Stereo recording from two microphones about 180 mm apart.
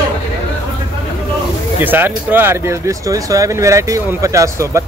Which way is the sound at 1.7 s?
10° right (ahead or behind).